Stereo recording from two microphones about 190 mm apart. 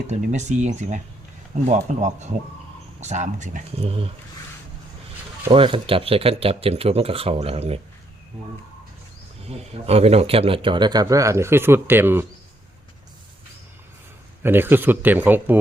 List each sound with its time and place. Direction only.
0.1 s speech: 40° right (ahead or behind)
5.5 s speech: 25° right (ahead or behind)
9.5 s speech: 30° right (ahead or behind); by 12.2 s 10° right (ahead or behind)
14.4 s speech: 10° right (ahead or behind)